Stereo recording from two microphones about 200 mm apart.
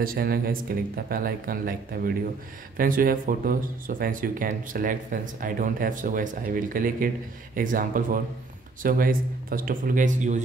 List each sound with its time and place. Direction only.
0.0 s speech: 50° right (ahead or behind)